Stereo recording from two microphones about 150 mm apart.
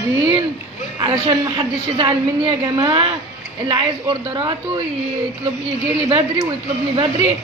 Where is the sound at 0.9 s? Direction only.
30° right (ahead or behind).